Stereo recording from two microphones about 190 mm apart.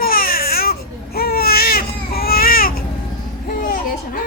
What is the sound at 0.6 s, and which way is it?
Baby cry, 55° left (ahead or behind).